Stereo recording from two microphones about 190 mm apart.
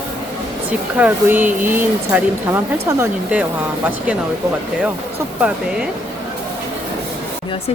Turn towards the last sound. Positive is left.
turn(degrees=-5)  # may be behind; listen again after turning